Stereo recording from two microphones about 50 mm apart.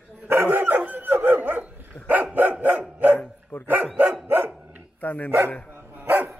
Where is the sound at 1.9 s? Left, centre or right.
Left.